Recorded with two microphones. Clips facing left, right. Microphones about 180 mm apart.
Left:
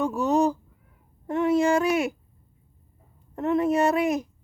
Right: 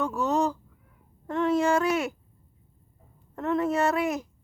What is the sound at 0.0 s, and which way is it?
Speech, 15° left (ahead or behind).